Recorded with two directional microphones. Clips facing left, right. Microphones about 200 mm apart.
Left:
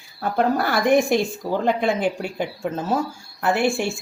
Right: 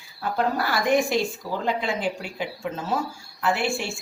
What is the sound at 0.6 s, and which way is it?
A woman's voice, 55° left (ahead or behind).